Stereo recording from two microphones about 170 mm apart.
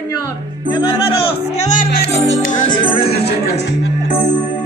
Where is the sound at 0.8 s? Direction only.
30° left (ahead or behind).